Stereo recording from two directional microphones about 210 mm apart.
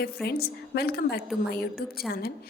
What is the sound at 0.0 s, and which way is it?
A woman's voice, 50° left (ahead or behind).